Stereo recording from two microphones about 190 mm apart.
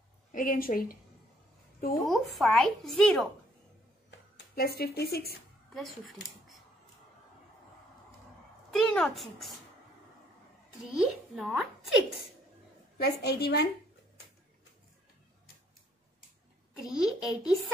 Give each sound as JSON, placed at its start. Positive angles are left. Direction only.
{"t": 0.3, "sound": "a woman's voice", "side_deg": 50}
{"t": 2.0, "sound": "speech", "side_deg": 0}
{"t": 4.6, "sound": "a woman's voice", "side_deg": 55}
{"t": 5.7, "sound": "speech", "side_deg": 0}
{"t": 8.7, "sound": "a child's voice", "side_deg": 5}
{"t": 10.8, "sound": "speech", "side_deg": -5}
{"t": 12.9, "sound": "a woman's voice", "side_deg": 60}
{"t": 16.8, "sound": "speech", "side_deg": 0}